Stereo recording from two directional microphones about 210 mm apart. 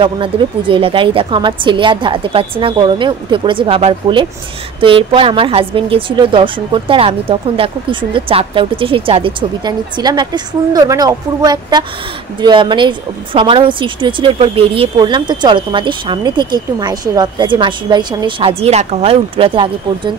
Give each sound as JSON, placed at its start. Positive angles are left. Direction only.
{"t": 0.0, "sound": "a woman's voice", "side_deg": -25}